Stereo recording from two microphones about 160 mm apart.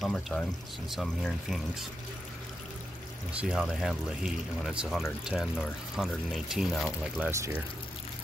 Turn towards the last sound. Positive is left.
turn(degrees=-15)  # may be behind; listen again after turning